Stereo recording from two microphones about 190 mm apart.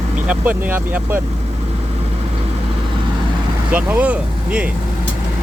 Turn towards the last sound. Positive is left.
turn(degrees=-5)  # may be behind; listen again after turning